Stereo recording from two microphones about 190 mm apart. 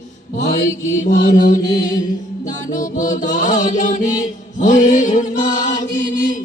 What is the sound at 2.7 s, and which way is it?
Music, 40° left (ahead or behind).